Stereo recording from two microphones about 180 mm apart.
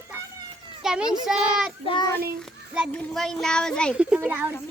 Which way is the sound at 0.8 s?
5° right (ahead or behind).